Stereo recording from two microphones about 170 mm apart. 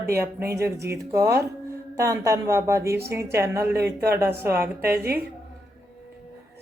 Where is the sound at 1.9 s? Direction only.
20° right (ahead or behind).